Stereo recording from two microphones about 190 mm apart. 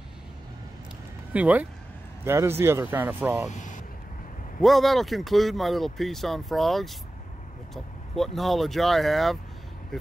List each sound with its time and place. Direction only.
1.3 s speech: 10° right (ahead or behind)
3.5 s vehicle: 40° left (ahead or behind)
4.6 s speech: centre (ahead or behind)